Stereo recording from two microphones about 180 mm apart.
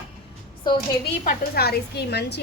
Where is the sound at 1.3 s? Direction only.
60° left (ahead or behind).